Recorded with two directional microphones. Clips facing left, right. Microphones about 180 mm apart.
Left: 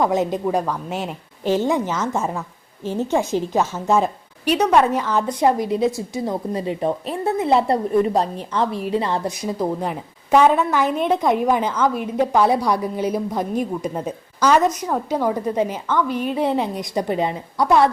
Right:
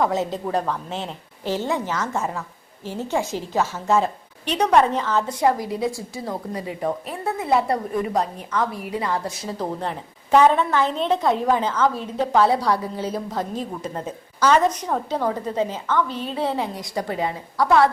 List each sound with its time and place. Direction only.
0.0 s a woman's voice: 15° left (ahead or behind)
4.5 s a woman's voice: 5° left (ahead or behind); by 17.8 s 20° left (ahead or behind)